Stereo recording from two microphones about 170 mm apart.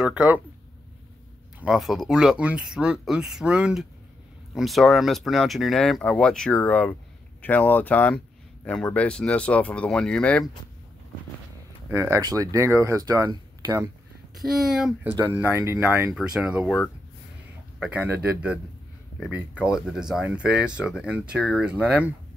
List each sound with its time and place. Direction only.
0.0 s speech: 10° right (ahead or behind)
1.6 s speech: centre (ahead or behind)
11.9 s speech: 15° right (ahead or behind)
14.3 s speech: centre (ahead or behind)
15.3 s speech: 15° right (ahead or behind)
18.1 s speech: 5° right (ahead or behind)